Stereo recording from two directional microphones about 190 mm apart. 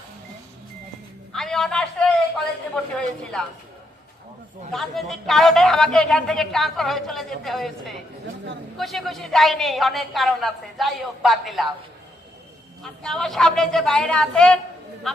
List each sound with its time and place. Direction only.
1.3 s a sound: 5° left (ahead or behind)
2.7 s speech: 5° left (ahead or behind)
4.7 s speech: centre (ahead or behind)
12.8 s speech: 5° left (ahead or behind)